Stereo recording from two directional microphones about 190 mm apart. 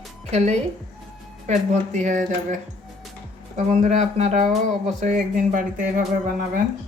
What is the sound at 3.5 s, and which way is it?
Speech, 40° right (ahead or behind).